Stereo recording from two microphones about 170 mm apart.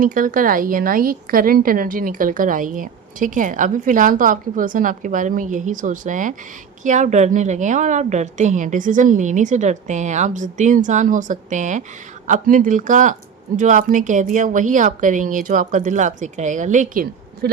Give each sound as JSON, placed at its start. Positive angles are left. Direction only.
{"t": 0.0, "sound": "a woman's voice", "side_deg": -50}